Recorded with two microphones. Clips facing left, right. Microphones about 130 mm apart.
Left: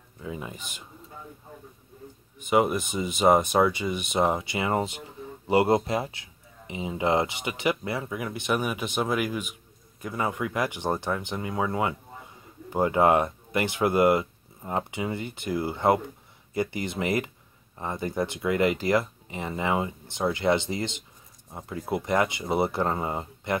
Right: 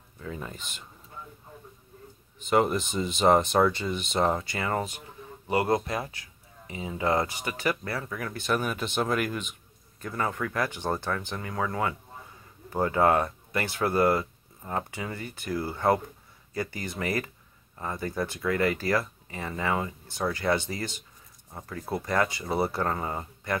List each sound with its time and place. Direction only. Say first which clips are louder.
0.2 s speech: left 2 dB; 10° left (ahead or behind)
2.5 s speech: left 1 dB; 10° left (ahead or behind)